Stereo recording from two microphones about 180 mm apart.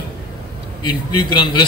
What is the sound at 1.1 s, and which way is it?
Speech, 25° left (ahead or behind).